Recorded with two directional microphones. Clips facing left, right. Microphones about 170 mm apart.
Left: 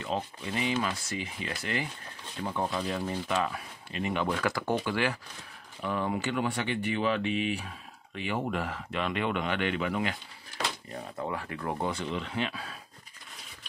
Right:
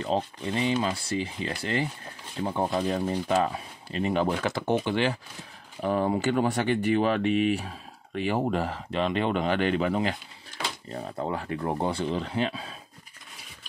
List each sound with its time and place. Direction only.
0.0 s speech: 35° right (ahead or behind)
4.3 s speech: 25° right (ahead or behind)
5.8 s speech: 40° right (ahead or behind)